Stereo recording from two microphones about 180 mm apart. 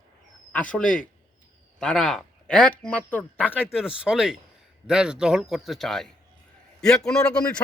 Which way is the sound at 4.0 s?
5° right (ahead or behind).